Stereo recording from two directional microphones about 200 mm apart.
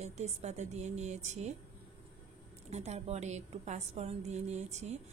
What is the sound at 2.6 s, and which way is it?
A woman's voice, 35° right (ahead or behind).